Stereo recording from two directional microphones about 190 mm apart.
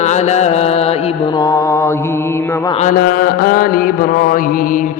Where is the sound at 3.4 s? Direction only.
50° left (ahead or behind).